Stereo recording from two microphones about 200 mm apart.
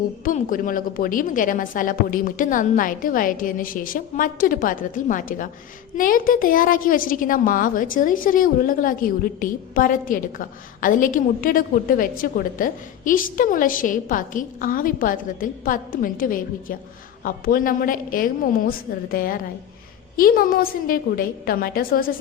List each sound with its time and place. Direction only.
0.3 s a woman's voice: 40° left (ahead or behind)